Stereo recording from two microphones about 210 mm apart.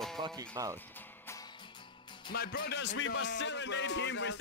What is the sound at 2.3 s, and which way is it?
Music, 50° left (ahead or behind).